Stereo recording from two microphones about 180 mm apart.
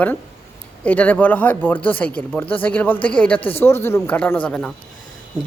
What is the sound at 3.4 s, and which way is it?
Speech, 30° left (ahead or behind).